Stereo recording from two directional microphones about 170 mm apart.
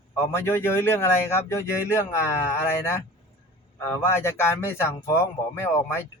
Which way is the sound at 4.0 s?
15° left (ahead or behind).